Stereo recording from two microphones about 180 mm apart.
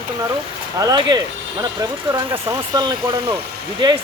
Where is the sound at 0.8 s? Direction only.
20° right (ahead or behind).